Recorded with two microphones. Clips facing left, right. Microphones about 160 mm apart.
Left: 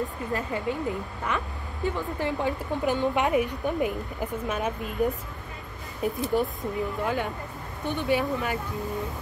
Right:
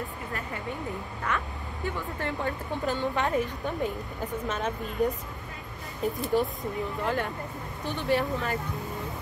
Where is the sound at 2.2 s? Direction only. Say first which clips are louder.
Left 3 dB; 15° left (ahead or behind).